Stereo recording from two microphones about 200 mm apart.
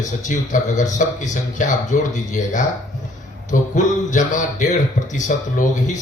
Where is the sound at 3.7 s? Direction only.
40° left (ahead or behind).